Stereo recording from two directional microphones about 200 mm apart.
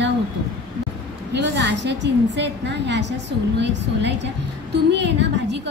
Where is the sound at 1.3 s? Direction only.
60° right (ahead or behind).